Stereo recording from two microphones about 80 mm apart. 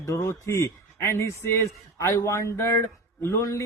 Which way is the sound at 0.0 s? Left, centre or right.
Left.